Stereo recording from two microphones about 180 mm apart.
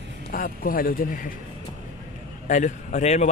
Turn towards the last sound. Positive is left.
turn(degrees=40)  # may be behind; listen again after turning